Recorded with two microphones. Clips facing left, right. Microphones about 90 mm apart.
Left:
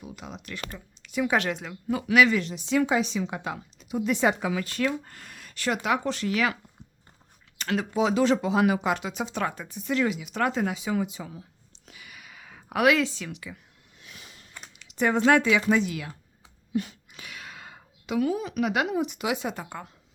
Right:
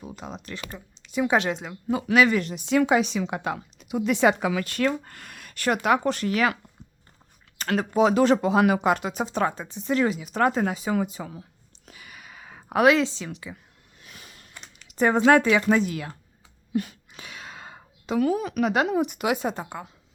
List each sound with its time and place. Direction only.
0.2 s speech: 35° right (ahead or behind)
2.0 s speech: 45° right (ahead or behind)
7.6 s speech: 45° right (ahead or behind)
11.9 s a sound: 40° right (ahead or behind)
14.8 s a sound: 40° right (ahead or behind)
15.3 s speech: 40° right (ahead or behind)
17.1 s a sound: 30° right (ahead or behind)
18.2 s speech: 50° right (ahead or behind)
18.6 s speech: 40° right (ahead or behind)
18.9 s speech: 50° right (ahead or behind)
19.8 s a woman's voice: 10° right (ahead or behind)